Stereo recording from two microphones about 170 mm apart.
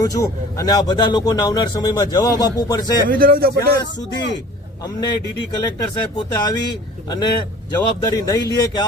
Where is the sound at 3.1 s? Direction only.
60° right (ahead or behind).